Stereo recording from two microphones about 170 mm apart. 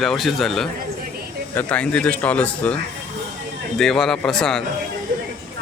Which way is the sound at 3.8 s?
5° left (ahead or behind).